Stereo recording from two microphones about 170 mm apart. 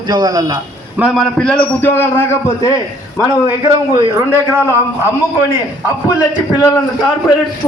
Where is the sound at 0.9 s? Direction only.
Centre (ahead or behind); by 2.7 s 15° left (ahead or behind).